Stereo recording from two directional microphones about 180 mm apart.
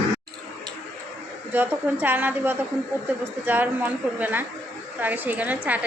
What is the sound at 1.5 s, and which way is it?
A woman's voice, 10° right (ahead or behind).